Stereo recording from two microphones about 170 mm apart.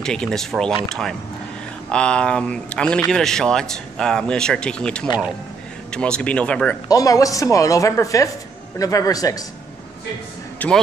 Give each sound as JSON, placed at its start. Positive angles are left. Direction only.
{"t": 0.0, "sound": "speech", "side_deg": 5}
{"t": 6.9, "sound": "a woman's voice", "side_deg": 20}
{"t": 10.6, "sound": "speech", "side_deg": 10}